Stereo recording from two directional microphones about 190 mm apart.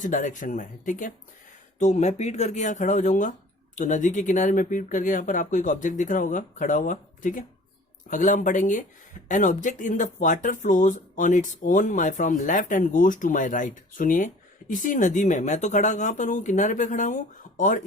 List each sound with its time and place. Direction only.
0.0 s speech: 40° left (ahead or behind)